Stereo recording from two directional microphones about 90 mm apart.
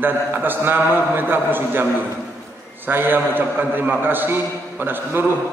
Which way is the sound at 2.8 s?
25° right (ahead or behind).